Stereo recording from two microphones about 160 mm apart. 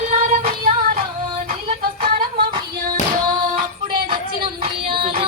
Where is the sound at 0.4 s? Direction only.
65° right (ahead or behind).